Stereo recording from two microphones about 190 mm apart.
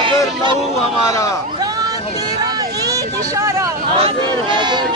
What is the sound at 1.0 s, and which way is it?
Speech, 15° left (ahead or behind).